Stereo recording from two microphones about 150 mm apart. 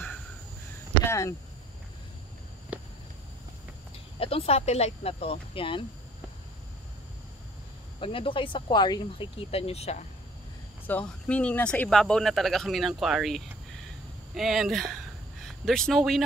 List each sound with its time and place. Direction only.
1.0 s a sound: 20° left (ahead or behind)
4.2 s speech: 40° left (ahead or behind)
8.0 s speech: 35° left (ahead or behind)
9.5 s speech: 40° left (ahead or behind)
10.9 s speech: 10° left (ahead or behind)